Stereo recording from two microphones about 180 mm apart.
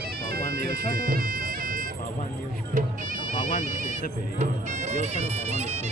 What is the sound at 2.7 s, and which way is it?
Speech, 45° right (ahead or behind).